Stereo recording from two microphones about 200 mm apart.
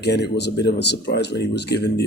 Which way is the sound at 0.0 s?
55° left (ahead or behind).